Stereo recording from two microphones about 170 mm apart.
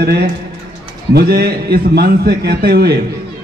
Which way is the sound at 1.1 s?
65° right (ahead or behind).